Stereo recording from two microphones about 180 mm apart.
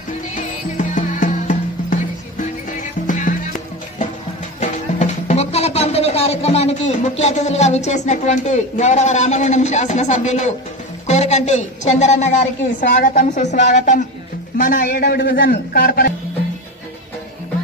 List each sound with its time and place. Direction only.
0.3 s music: 45° left (ahead or behind)
6.9 s a woman's voice: 40° left (ahead or behind); by 16.1 s 55° left (ahead or behind)